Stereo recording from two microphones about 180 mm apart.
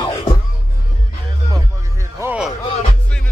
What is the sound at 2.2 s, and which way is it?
Music, 5° right (ahead or behind).